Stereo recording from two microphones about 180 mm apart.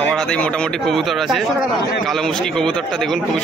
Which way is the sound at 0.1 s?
5° left (ahead or behind).